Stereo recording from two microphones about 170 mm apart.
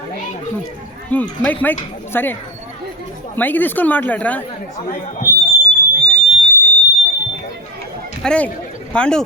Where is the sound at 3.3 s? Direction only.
10° left (ahead or behind).